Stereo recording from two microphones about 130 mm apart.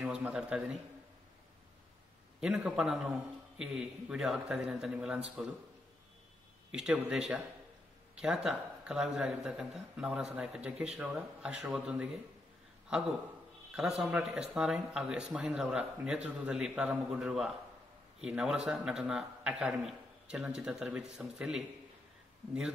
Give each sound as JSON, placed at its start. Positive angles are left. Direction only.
{"t": 0.0, "sound": "a man's voice", "side_deg": -10}
{"t": 2.4, "sound": "a man's voice", "side_deg": -5}
{"t": 6.7, "sound": "a man's voice", "side_deg": -5}
{"t": 13.7, "sound": "a man's voice", "side_deg": -5}